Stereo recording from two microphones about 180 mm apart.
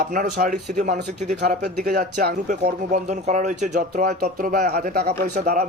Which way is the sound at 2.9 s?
40° right (ahead or behind).